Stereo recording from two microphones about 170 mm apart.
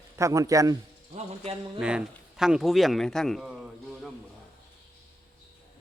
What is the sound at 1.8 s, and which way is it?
A man's voice, 5° right (ahead or behind).